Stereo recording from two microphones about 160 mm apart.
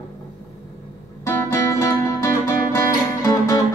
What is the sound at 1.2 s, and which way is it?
Music, 15° left (ahead or behind).